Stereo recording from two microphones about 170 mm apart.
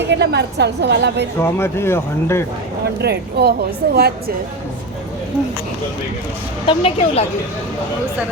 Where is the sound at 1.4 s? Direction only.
15° left (ahead or behind).